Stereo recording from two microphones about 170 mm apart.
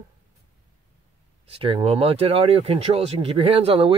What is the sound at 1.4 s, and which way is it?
Speech, 30° right (ahead or behind).